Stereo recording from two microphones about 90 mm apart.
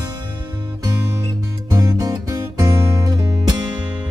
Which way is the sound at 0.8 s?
35° right (ahead or behind).